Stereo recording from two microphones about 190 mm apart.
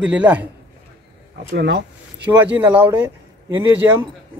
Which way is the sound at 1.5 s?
65° right (ahead or behind).